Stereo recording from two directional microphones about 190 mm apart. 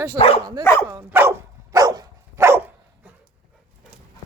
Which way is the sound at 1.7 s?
20° right (ahead or behind).